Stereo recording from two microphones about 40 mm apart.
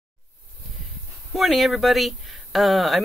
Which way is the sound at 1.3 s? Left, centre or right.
Centre.